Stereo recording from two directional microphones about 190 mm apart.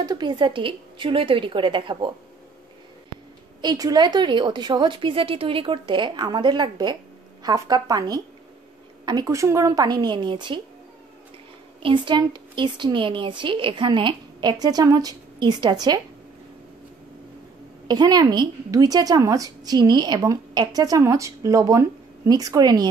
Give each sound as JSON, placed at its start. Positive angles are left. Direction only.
{"t": 0.0, "sound": "speech", "side_deg": -20}
{"t": 3.6, "sound": "speech", "side_deg": -20}
{"t": 11.8, "sound": "speech", "side_deg": -25}
{"t": 17.8, "sound": "speech", "side_deg": -20}